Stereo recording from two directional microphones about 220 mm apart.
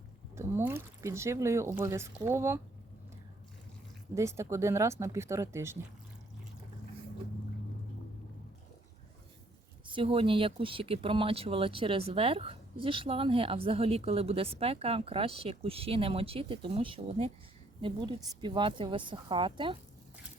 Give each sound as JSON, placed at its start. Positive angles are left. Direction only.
{"t": 0.3, "sound": "speech", "side_deg": -10}
{"t": 4.1, "sound": "speech", "side_deg": -10}
{"t": 9.8, "sound": "speech", "side_deg": -25}